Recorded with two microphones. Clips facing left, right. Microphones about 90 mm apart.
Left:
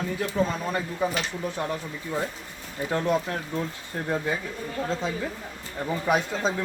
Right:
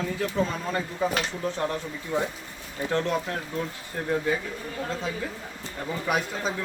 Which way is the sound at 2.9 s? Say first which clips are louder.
Left 2 dB; 15° left (ahead or behind).